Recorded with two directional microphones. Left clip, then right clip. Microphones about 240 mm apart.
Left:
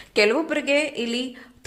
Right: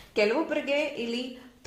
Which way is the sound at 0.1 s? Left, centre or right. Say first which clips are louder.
Left 5 dB; left.